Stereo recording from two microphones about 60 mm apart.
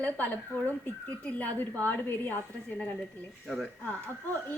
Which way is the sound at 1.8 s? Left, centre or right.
Left.